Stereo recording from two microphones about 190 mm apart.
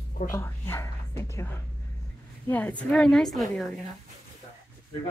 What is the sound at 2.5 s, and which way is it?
Speech, 10° left (ahead or behind).